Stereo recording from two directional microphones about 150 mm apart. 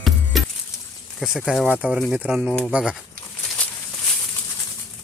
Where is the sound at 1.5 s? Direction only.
5° right (ahead or behind).